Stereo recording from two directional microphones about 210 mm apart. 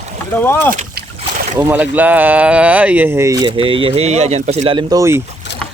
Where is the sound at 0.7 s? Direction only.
40° right (ahead or behind).